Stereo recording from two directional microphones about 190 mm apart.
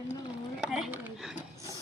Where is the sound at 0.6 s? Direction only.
5° right (ahead or behind).